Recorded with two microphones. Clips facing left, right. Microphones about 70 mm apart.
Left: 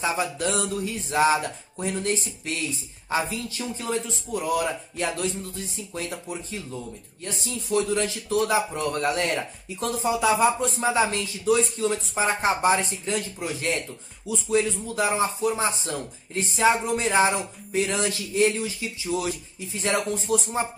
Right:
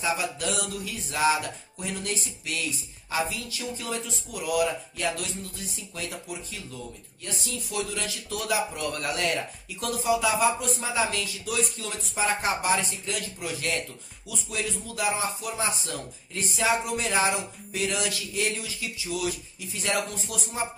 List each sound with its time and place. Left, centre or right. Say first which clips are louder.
0.0 s speech: left 3 dB; left